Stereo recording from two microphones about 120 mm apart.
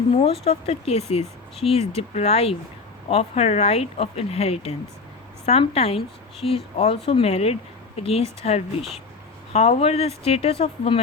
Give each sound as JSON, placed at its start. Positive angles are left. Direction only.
{"t": 0.2, "sound": "speech", "side_deg": 60}